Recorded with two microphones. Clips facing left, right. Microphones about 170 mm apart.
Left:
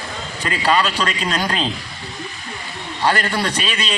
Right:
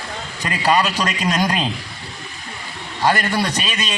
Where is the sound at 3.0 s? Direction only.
15° right (ahead or behind).